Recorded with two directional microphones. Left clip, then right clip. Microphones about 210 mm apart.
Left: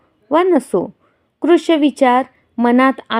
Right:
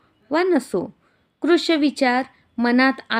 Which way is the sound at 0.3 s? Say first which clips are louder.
Left 6 dB; 5° left (ahead or behind).